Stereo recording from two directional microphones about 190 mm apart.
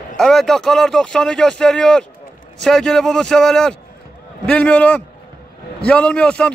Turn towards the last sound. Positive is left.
turn(degrees=5)  # may be behind; listen again after turning